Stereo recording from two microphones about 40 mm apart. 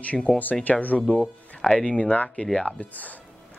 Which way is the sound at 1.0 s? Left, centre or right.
Left.